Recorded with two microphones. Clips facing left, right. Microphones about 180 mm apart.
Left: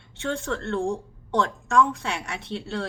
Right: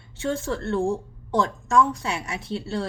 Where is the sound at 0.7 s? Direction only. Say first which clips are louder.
Right 3 dB; 5° right (ahead or behind).